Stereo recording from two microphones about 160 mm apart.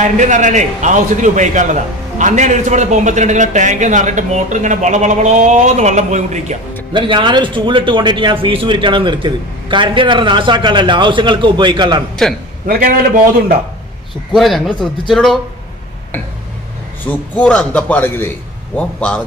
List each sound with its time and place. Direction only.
0.0 s a man's voice: 50° right (ahead or behind)
6.9 s speech: 30° right (ahead or behind)
12.2 s speech: 5° left (ahead or behind)
12.6 s a man's voice: 60° right (ahead or behind)
14.3 s speech: centre (ahead or behind)
17.1 s a man's voice: 10° left (ahead or behind)